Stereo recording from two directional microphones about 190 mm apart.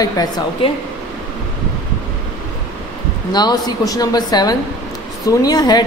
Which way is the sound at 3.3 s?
20° left (ahead or behind).